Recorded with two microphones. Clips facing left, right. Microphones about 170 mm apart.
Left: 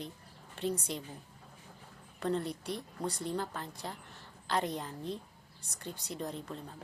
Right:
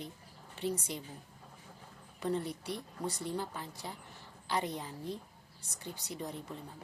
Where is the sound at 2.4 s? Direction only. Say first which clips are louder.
Left 1 dB; 60° left (ahead or behind).